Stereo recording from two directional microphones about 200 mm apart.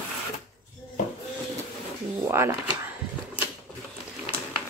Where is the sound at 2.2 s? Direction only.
15° right (ahead or behind).